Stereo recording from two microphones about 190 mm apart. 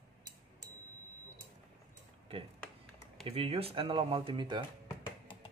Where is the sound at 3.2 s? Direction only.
30° right (ahead or behind).